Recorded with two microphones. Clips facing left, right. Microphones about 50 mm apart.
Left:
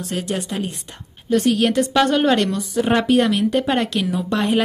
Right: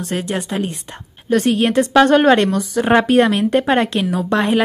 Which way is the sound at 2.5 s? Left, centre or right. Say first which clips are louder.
Right 3 dB; right.